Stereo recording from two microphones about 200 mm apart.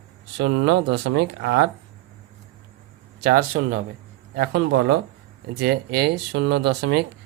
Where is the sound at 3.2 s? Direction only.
45° right (ahead or behind).